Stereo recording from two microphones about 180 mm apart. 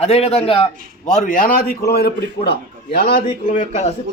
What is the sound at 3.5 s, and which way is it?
Speech, 40° left (ahead or behind).